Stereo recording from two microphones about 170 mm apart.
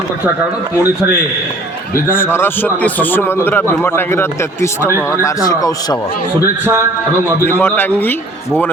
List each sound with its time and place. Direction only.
2.0 s a man's voice: 15° left (ahead or behind)
6.4 s a man's voice: 15° right (ahead or behind)
7.6 s a man's voice: 10° left (ahead or behind)